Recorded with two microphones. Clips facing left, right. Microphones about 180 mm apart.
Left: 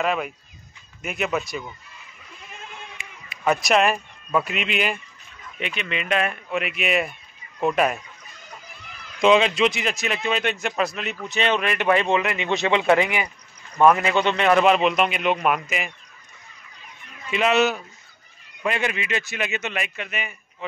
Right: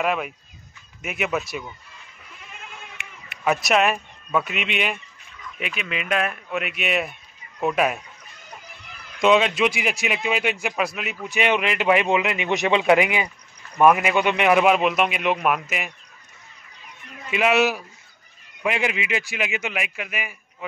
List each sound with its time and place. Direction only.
0.0 s a man's voice: 5° right (ahead or behind)
3.0 s a sound: 65° right (ahead or behind)
3.4 s a man's voice: 5° right (ahead or behind)
9.2 s a man's voice: centre (ahead or behind)
17.3 s speech: 10° right (ahead or behind)